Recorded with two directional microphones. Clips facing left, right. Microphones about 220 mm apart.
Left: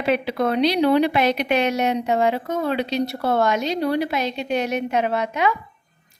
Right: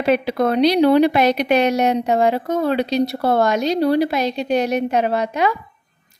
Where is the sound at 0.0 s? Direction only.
40° right (ahead or behind).